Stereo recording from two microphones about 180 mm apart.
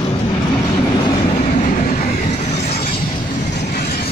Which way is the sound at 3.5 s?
65° left (ahead or behind).